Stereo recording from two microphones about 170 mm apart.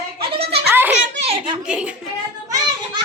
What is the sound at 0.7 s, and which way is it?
Children playing, 10° right (ahead or behind).